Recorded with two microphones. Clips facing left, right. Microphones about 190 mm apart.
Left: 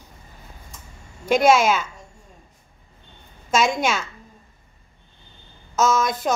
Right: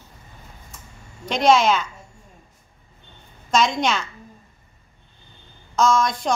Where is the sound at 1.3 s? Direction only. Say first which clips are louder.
Left 1 dB; 5° left (ahead or behind).